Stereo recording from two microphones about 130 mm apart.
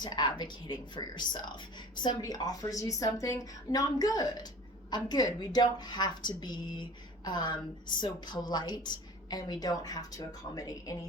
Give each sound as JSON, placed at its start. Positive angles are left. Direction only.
{"t": 0.0, "sound": "speech", "side_deg": 35}